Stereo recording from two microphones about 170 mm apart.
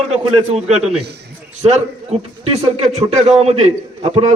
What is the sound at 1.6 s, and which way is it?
A man's voice, 40° right (ahead or behind).